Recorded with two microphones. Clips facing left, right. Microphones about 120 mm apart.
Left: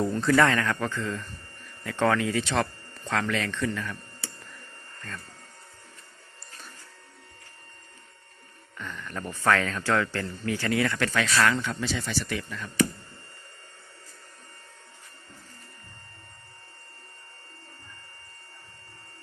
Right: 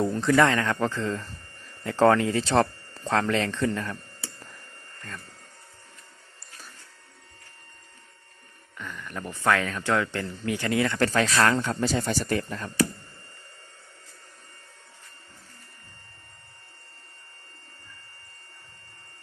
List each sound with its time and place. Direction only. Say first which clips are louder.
0.0 s speech: right 1 dB; 20° right (ahead or behind)
8.8 s speech: even; 5° right (ahead or behind); by 11.0 s 25° right (ahead or behind)
11.0 s speech: right 4 dB; 35° right (ahead or behind)